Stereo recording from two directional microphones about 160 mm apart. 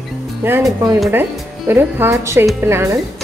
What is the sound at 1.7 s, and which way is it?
Speech, 15° right (ahead or behind).